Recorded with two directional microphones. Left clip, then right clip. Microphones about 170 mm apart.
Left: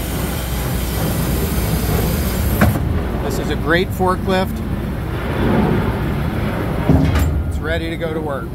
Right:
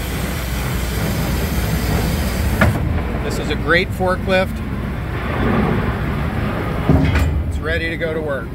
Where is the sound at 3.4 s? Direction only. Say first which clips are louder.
Right 2 dB; 15° left (ahead or behind).